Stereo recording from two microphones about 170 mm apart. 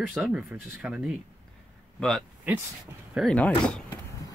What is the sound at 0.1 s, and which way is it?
Speech, 5° right (ahead or behind).